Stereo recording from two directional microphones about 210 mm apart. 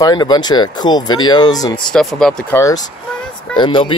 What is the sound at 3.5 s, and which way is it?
Speech, 25° left (ahead or behind).